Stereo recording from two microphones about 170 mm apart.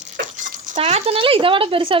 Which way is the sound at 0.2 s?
45° right (ahead or behind).